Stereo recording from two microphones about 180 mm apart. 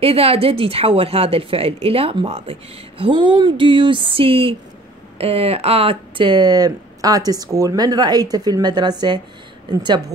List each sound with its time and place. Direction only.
0.0 s a woman's voice: 35° right (ahead or behind)